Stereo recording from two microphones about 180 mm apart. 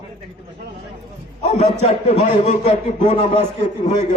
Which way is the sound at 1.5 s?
40° left (ahead or behind).